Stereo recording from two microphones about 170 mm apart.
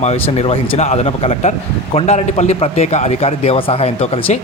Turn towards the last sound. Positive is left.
turn(degrees=35)  # may be behind; listen again after turning